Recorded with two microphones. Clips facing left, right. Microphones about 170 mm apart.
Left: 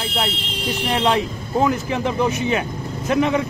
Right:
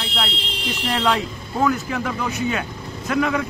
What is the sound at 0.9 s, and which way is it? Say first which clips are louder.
Speech: left 2 dB; 20° left (ahead or behind).